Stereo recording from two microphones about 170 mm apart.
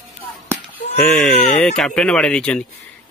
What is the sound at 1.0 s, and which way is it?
Speech, 5° left (ahead or behind).